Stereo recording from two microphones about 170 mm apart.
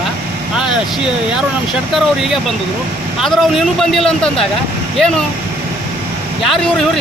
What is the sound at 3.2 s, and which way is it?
Speech, centre (ahead or behind).